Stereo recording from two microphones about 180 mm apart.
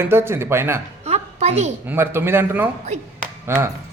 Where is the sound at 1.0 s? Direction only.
35° right (ahead or behind).